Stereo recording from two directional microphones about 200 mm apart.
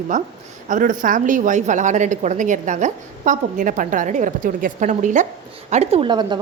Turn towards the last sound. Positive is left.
turn(degrees=-20)  # may be behind; listen again after turning